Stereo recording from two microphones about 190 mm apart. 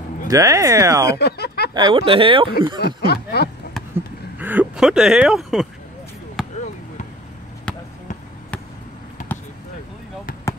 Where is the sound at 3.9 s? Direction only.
10° right (ahead or behind).